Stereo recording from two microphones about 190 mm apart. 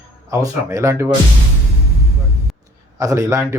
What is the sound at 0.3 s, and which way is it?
Speech, 15° right (ahead or behind).